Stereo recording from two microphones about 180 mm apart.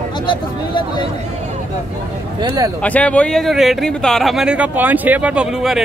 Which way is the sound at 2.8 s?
5° left (ahead or behind).